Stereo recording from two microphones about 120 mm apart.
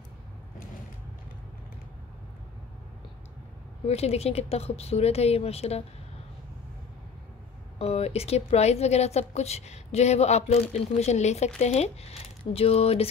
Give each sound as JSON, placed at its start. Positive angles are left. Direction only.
{"t": 3.8, "sound": "a woman's voice", "side_deg": 60}
{"t": 7.8, "sound": "a woman's voice", "side_deg": 60}